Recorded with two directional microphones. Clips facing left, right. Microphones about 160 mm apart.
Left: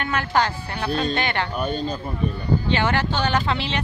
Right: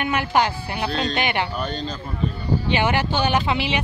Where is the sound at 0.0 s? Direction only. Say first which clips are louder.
Right 2 dB; 15° right (ahead or behind).